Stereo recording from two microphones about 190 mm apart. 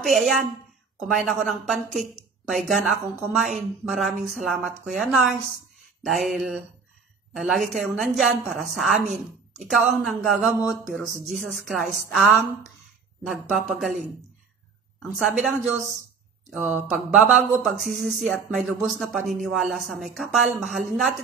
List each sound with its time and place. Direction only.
0.0 s speech: centre (ahead or behind)
16.5 s speech: 5° right (ahead or behind)